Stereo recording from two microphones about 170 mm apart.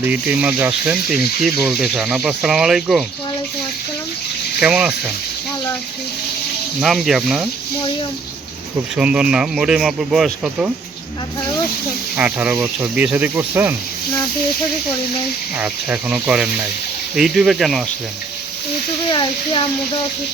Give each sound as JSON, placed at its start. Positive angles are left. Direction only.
{"t": 0.0, "sound": "speech", "side_deg": -10}
{"t": 4.6, "sound": "speech", "side_deg": -5}
{"t": 6.7, "sound": "speech", "side_deg": 0}
{"t": 9.0, "sound": "speech", "side_deg": -5}
{"t": 12.1, "sound": "speech", "side_deg": -10}
{"t": 15.5, "sound": "speech", "side_deg": -10}
{"t": 19.1, "sound": "speech", "side_deg": 30}